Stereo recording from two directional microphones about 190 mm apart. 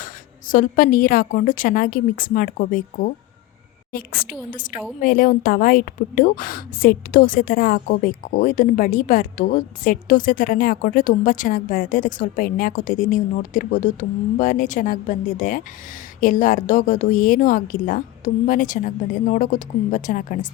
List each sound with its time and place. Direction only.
0.0 s a woman's voice: 45° left (ahead or behind)